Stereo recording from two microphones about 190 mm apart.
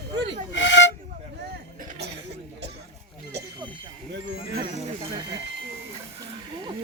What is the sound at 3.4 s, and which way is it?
Bicycle bell, 20° right (ahead or behind).